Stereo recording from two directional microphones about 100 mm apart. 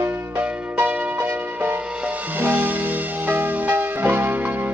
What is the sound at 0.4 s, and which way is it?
Music, 15° right (ahead or behind).